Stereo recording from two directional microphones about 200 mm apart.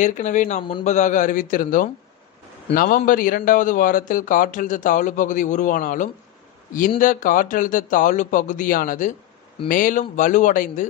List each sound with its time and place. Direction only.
0.0 s a man's voice: 40° left (ahead or behind)